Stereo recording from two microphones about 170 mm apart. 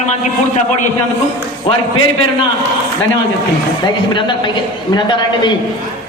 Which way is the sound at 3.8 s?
30° left (ahead or behind).